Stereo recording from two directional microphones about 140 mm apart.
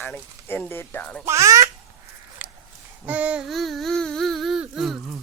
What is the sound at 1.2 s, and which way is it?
Speech, 20° right (ahead or behind).